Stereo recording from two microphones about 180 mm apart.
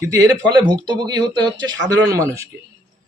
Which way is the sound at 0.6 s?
25° right (ahead or behind).